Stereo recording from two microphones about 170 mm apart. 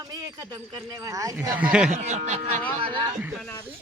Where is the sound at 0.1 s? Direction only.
20° right (ahead or behind).